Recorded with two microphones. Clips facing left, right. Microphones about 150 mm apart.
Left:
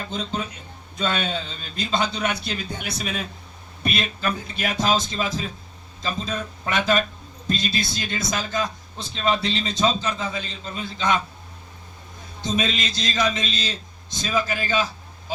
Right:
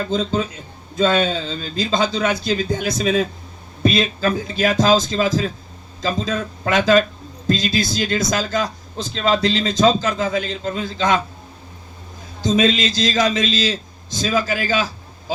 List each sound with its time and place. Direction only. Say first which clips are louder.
0.3 s a man's voice: right 7 dB; 90° right
12.4 s a man's voice: right 8 dB; 90° right